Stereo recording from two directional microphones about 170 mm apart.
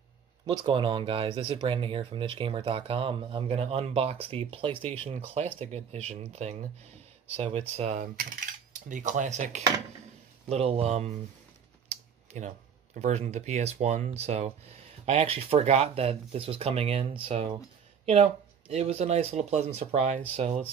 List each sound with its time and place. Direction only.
0.7 s speech: 30° right (ahead or behind)